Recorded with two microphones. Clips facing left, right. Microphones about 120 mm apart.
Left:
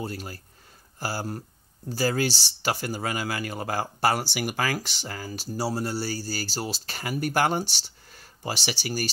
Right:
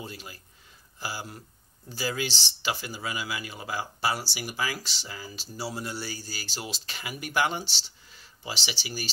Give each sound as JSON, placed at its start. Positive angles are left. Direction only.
{"t": 0.0, "sound": "speech", "side_deg": 45}